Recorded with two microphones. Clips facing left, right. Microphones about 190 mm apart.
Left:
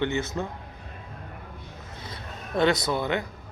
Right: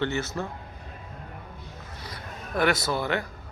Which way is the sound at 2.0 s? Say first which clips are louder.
Even; 25° left (ahead or behind).